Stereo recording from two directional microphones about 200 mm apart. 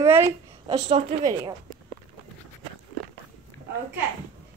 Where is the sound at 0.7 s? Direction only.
30° right (ahead or behind).